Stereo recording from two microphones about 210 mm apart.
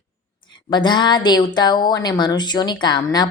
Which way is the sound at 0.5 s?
20° left (ahead or behind).